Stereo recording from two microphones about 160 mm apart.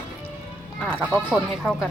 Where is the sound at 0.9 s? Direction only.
10° right (ahead or behind).